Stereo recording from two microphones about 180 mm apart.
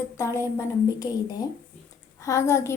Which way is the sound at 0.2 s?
15° left (ahead or behind).